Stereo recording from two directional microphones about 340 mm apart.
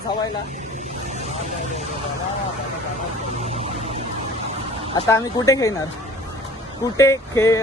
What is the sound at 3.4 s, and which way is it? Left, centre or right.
Music, centre.